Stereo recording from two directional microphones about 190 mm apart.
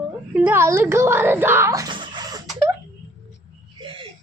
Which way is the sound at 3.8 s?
25° right (ahead or behind).